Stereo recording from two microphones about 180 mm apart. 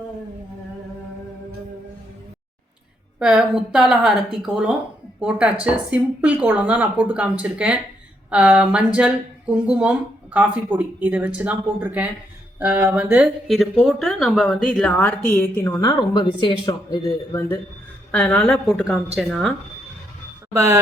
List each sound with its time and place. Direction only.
3.2 s a woman's voice: 5° right (ahead or behind)
20.5 s speech: 15° right (ahead or behind)